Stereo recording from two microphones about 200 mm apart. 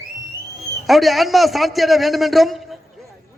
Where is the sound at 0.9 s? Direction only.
Centre (ahead or behind).